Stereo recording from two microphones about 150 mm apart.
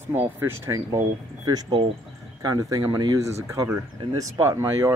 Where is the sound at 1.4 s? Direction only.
25° right (ahead or behind).